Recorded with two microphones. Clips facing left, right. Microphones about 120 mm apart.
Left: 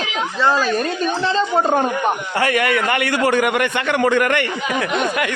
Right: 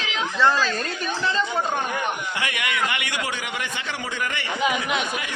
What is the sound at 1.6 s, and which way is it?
A man's voice, 45° left (ahead or behind).